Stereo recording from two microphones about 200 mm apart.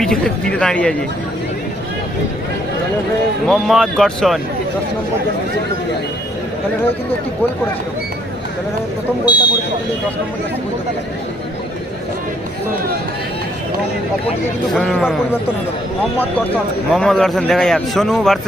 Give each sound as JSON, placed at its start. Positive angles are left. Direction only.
{"t": 0.0, "sound": "a man's voice", "side_deg": 5}
{"t": 3.4, "sound": "a man's voice", "side_deg": 0}
{"t": 9.2, "sound": "speech", "side_deg": 20}
{"t": 14.8, "sound": "a man's voice", "side_deg": 0}
{"t": 16.9, "sound": "a man's voice", "side_deg": 0}